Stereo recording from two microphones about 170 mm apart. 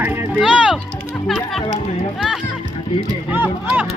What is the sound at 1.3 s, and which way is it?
Speech, centre (ahead or behind).